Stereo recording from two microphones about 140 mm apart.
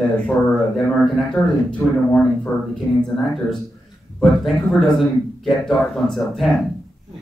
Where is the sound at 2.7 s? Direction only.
5° left (ahead or behind).